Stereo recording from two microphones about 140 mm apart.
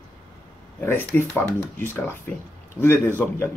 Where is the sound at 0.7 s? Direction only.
15° left (ahead or behind).